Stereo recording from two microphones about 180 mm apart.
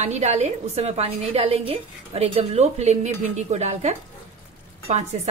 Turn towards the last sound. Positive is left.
turn(degrees=-40)  # may be behind; listen again after turning